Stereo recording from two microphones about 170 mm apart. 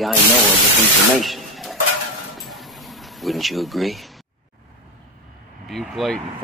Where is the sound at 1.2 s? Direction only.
Centre (ahead or behind).